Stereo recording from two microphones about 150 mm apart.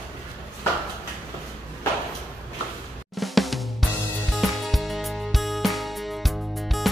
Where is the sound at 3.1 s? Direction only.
Centre (ahead or behind).